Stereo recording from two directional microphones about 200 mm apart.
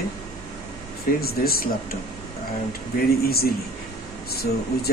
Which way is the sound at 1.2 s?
50° left (ahead or behind).